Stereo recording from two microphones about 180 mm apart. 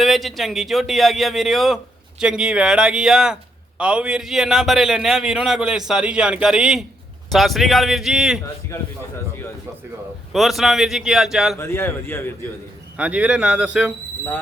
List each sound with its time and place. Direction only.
0.0 s speech: centre (ahead or behind)
8.7 s a man's voice: 15° left (ahead or behind)
10.3 s speech: centre (ahead or behind)
11.5 s a man's voice: 15° left (ahead or behind)
13.0 s speech: 5° right (ahead or behind)